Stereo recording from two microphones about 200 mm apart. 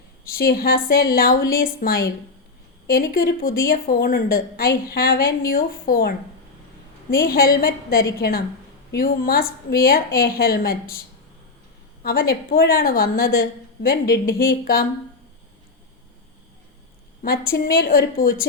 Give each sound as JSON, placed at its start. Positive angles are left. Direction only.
{"t": 0.3, "sound": "a woman's voice", "side_deg": 50}
{"t": 12.0, "sound": "a woman's voice", "side_deg": 50}
{"t": 17.2, "sound": "a woman's voice", "side_deg": 50}